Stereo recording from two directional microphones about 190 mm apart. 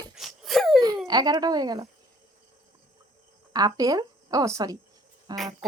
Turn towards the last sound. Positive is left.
turn(degrees=-20)  # may be behind; listen again after turning